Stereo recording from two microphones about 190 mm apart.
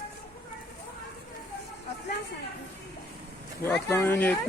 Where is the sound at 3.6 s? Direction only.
10° left (ahead or behind).